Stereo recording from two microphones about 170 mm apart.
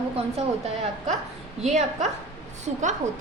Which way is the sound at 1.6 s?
40° right (ahead or behind).